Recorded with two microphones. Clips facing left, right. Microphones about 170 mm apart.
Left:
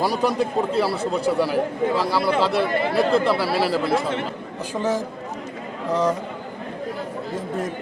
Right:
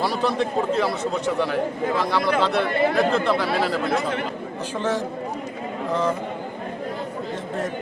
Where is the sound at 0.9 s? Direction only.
35° left (ahead or behind).